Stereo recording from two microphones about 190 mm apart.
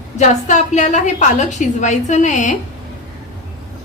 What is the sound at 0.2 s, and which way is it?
A woman's voice, 40° left (ahead or behind).